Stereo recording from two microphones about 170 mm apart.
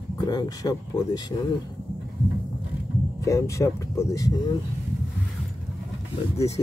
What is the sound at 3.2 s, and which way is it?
Speech, 20° left (ahead or behind).